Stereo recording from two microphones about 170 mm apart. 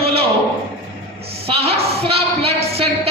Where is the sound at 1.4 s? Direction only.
35° right (ahead or behind).